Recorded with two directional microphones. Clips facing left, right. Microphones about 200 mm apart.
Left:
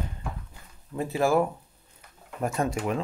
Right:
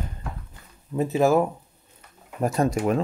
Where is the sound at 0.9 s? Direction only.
20° right (ahead or behind).